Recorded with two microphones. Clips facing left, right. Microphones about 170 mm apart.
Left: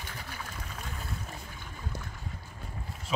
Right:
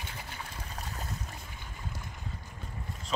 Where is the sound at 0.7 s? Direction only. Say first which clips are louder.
Even; 35° right (ahead or behind).